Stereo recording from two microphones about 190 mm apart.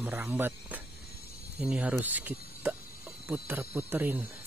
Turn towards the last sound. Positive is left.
turn(degrees=-10)  # may be behind; listen again after turning